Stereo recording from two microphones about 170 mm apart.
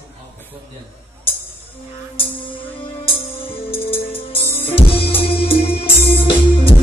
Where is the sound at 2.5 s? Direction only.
10° left (ahead or behind).